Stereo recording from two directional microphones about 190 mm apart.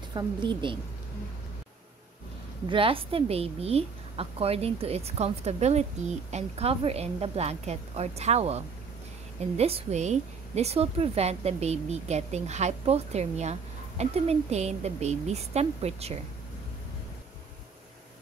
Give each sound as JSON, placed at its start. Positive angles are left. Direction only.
{"t": 0.1, "sound": "a woman's voice", "side_deg": -25}
{"t": 2.7, "sound": "a woman's voice", "side_deg": -30}